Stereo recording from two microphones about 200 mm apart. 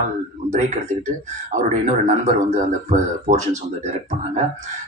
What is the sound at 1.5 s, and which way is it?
Speech, 35° right (ahead or behind).